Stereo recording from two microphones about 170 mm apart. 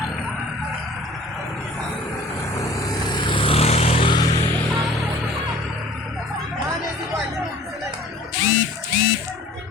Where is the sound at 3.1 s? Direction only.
30° left (ahead or behind).